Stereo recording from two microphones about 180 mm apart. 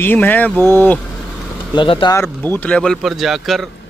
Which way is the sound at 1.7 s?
25° left (ahead or behind).